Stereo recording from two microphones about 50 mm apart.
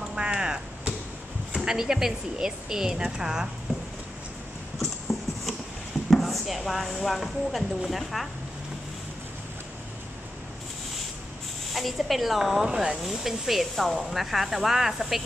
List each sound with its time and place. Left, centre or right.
0.1 s a sound: centre
1.5 s a woman's voice: centre
6.0 s speech: centre
11.7 s speech: centre